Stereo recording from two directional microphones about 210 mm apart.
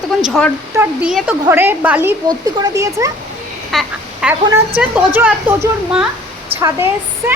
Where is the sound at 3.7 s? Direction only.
Centre (ahead or behind).